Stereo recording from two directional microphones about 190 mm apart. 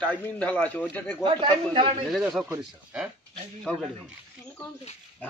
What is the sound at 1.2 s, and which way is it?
Speech, 25° right (ahead or behind).